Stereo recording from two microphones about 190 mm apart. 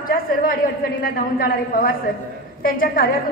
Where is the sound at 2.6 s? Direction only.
50° left (ahead or behind).